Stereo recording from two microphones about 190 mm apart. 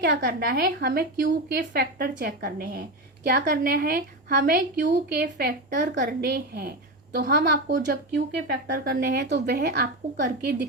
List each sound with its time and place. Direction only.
0.0 s a woman's voice: 65° right (ahead or behind)